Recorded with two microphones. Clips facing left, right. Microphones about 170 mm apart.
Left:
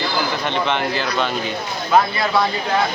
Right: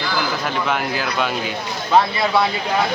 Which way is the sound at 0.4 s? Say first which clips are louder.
Left 1 dB; 5° right (ahead or behind).